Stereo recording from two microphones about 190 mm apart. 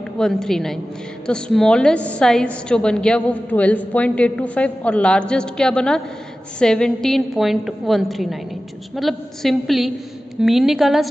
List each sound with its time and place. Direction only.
0.2 s a woman's voice: centre (ahead or behind)